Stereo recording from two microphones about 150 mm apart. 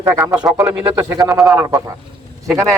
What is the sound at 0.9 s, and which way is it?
Speech, 25° right (ahead or behind).